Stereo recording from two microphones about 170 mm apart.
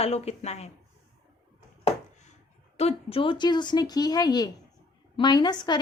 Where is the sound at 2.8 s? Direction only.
35° left (ahead or behind).